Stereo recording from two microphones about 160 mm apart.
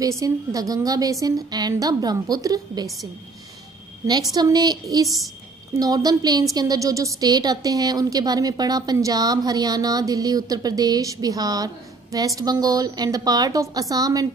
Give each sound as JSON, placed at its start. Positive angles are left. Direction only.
{"t": 0.0, "sound": "a woman's voice", "side_deg": -20}
{"t": 4.1, "sound": "a woman's voice", "side_deg": -25}